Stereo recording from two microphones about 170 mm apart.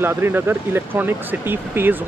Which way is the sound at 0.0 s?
10° right (ahead or behind).